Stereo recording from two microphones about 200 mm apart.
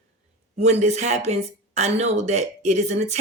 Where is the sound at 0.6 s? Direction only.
35° right (ahead or behind).